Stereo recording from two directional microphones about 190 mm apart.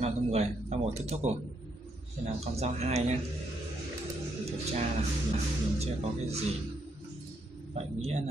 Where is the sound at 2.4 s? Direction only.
35° right (ahead or behind).